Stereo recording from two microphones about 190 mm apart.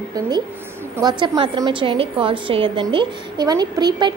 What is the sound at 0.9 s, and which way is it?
A woman's voice, 20° right (ahead or behind).